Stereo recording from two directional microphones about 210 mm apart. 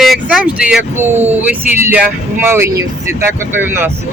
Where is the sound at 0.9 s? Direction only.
35° right (ahead or behind).